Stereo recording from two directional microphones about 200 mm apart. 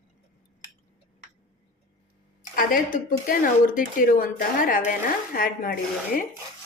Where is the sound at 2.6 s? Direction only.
45° left (ahead or behind).